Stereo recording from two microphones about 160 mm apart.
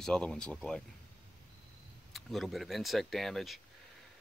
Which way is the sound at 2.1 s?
Centre (ahead or behind).